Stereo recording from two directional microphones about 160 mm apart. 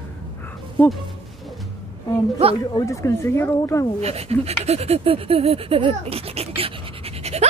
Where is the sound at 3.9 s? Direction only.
40° right (ahead or behind).